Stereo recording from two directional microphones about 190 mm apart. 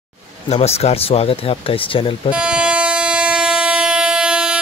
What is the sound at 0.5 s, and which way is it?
Speech, 35° left (ahead or behind).